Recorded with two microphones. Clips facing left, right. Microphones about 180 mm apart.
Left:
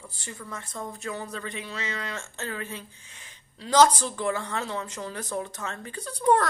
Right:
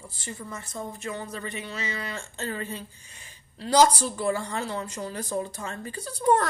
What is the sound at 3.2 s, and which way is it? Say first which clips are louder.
Speech: right 4 dB; 10° right (ahead or behind).